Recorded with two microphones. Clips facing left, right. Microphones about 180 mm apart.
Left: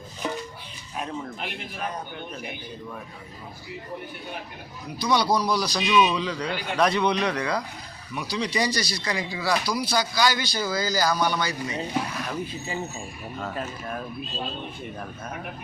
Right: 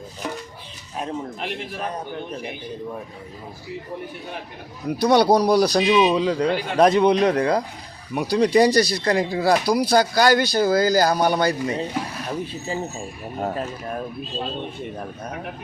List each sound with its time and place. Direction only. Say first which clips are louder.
0.9 s a man's voice: right 4 dB; 35° right (ahead or behind)
4.9 s speech: right 7 dB; 65° right (ahead or behind)
5.8 s speech: right 4 dB; 30° right (ahead or behind)
6.1 s a man's voice: right 8 dB; 45° right (ahead or behind)
12.3 s a man's voice: right 4 dB; 35° right (ahead or behind)